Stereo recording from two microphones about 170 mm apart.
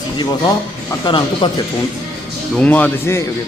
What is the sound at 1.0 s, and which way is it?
Speech, 25° left (ahead or behind).